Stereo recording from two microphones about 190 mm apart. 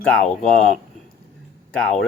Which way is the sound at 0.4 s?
5° left (ahead or behind).